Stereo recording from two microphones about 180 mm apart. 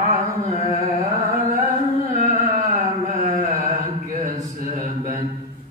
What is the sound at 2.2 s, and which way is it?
Carnatic music, 45° right (ahead or behind).